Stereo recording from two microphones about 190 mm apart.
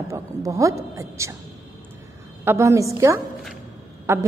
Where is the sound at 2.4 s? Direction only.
15° right (ahead or behind).